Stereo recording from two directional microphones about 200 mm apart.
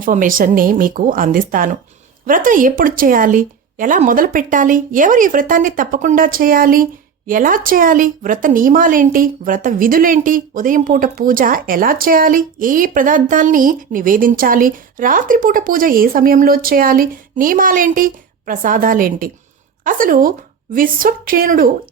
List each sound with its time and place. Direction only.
0.0 s speech: 40° right (ahead or behind)